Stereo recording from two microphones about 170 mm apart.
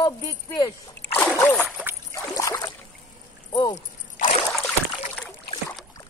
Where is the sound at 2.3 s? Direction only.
20° left (ahead or behind).